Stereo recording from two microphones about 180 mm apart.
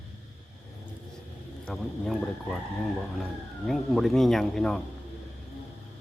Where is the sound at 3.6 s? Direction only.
Centre (ahead or behind).